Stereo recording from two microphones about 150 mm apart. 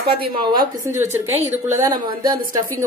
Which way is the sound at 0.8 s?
20° right (ahead or behind).